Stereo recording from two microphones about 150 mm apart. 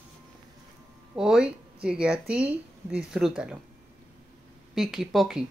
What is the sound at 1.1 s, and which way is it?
Speech, 5° right (ahead or behind).